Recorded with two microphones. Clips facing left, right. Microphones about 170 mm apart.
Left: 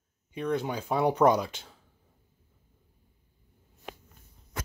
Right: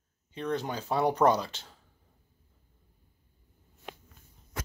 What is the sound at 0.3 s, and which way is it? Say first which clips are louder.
Speech: left 2 dB; 10° left (ahead or behind).